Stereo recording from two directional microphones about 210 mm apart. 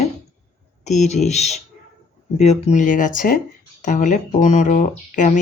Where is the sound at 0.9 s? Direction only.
35° left (ahead or behind).